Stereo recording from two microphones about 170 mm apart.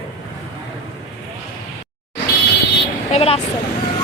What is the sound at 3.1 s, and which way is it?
Vehicle, 35° left (ahead or behind).